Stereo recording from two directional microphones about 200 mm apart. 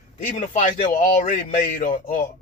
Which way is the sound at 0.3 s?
40° left (ahead or behind).